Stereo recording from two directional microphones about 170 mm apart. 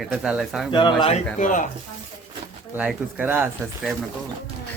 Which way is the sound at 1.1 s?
50° left (ahead or behind).